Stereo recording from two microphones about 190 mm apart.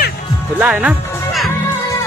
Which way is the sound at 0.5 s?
5° right (ahead or behind).